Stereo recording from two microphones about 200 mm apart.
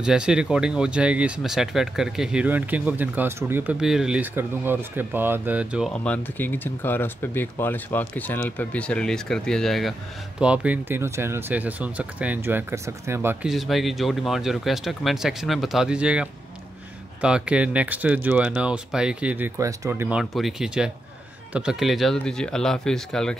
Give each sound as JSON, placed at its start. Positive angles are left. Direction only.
{"t": 0.0, "sound": "speech", "side_deg": -5}